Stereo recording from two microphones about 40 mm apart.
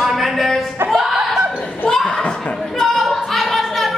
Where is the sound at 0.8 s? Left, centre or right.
Centre.